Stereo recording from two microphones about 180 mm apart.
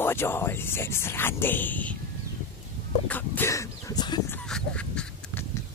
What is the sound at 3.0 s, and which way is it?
Speech, 10° left (ahead or behind).